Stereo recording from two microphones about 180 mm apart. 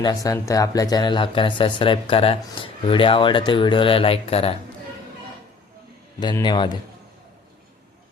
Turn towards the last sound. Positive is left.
turn(degrees=25)  # may be behind; listen again after turning